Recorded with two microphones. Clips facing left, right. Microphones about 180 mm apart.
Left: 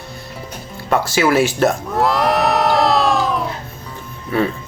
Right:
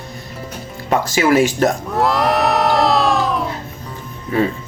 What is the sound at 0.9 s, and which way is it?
Music, 15° right (ahead or behind).